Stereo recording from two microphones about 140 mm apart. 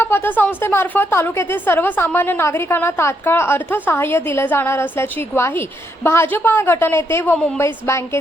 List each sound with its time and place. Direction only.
0.0 s a woman's voice: 15° left (ahead or behind)
7.3 s a woman's voice: 5° left (ahead or behind)
7.6 s a woman's voice: 20° left (ahead or behind)